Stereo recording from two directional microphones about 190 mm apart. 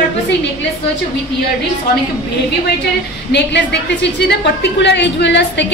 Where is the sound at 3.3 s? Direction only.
65° left (ahead or behind).